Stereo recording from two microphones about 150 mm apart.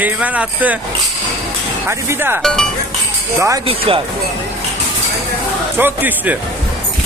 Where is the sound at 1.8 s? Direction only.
15° right (ahead or behind).